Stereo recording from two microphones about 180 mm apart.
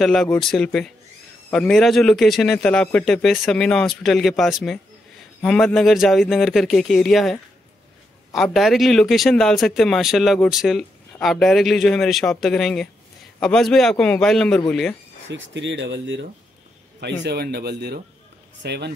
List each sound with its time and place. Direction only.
0.0 s speech: centre (ahead or behind)
8.4 s speech: centre (ahead or behind)
15.2 s a man's voice: 90° right; by 18.9 s 70° right (ahead or behind)